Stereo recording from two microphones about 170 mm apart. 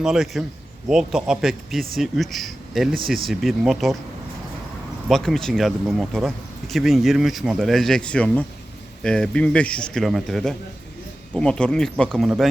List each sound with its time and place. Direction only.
0.0 s speech: centre (ahead or behind)
5.0 s speech: centre (ahead or behind)